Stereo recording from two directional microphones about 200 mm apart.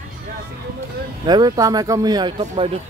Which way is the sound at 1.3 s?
20° right (ahead or behind).